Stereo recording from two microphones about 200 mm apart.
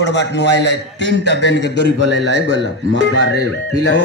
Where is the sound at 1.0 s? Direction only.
65° right (ahead or behind).